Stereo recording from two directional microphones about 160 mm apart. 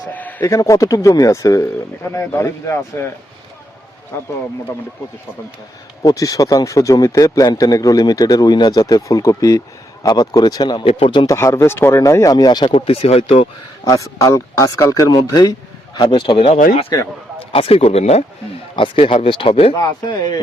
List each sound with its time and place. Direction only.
0.1 s a man's voice: 10° left (ahead or behind)
4.1 s a man's voice: 15° left (ahead or behind)
6.0 s a man's voice: 25° left (ahead or behind)
11.3 s a man's voice: 15° left (ahead or behind); by 13.5 s 35° left (ahead or behind)
13.8 s a man's voice: 20° left (ahead or behind)
16.5 s speech: 55° left (ahead or behind)
17.5 s speech: 35° left (ahead or behind)
19.7 s a man's voice: 25° left (ahead or behind)